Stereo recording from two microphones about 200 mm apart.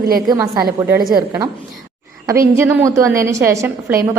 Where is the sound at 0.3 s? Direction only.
15° right (ahead or behind).